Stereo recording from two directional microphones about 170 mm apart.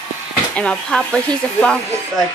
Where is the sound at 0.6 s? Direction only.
5° left (ahead or behind).